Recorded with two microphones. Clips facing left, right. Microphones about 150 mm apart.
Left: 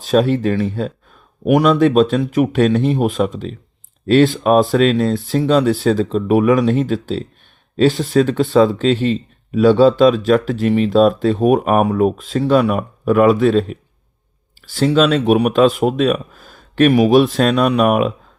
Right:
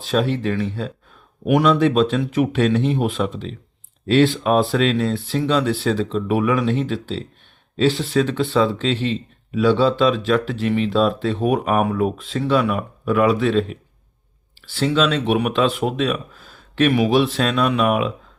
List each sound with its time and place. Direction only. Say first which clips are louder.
0.0 s speech: left 6 dB; 45° left (ahead or behind)